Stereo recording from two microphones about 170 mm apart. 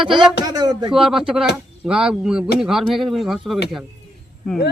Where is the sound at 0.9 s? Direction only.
Centre (ahead or behind).